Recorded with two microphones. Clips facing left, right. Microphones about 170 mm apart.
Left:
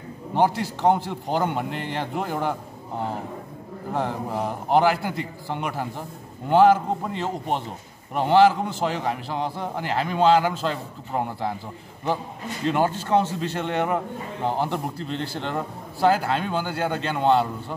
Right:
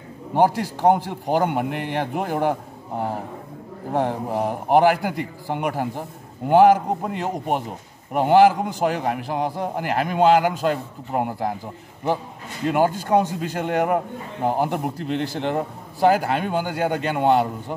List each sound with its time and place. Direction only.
0.3 s a man's voice: 15° right (ahead or behind)
4.3 s a man's voice: 15° right (ahead or behind)
12.6 s a man's voice: 10° right (ahead or behind)